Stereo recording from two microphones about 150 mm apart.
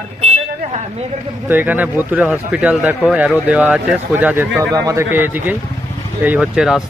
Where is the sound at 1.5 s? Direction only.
10° right (ahead or behind).